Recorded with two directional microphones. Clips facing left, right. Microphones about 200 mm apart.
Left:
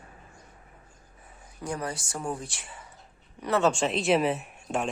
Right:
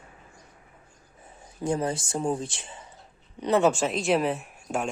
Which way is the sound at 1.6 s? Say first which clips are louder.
Right 6 dB; 25° right (ahead or behind).